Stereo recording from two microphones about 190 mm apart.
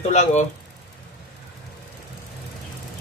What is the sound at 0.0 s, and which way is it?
Speech, 35° left (ahead or behind).